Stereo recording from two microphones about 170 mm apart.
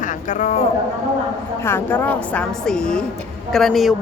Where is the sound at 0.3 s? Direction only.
45° left (ahead or behind).